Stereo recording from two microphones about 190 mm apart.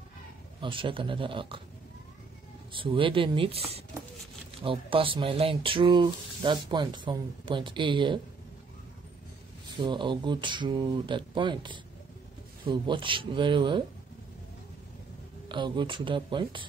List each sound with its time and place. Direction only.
0.6 s speech: 25° right (ahead or behind)
2.7 s speech: 25° right (ahead or behind)
9.8 s speech: 25° right (ahead or behind)
15.4 s speech: 25° right (ahead or behind)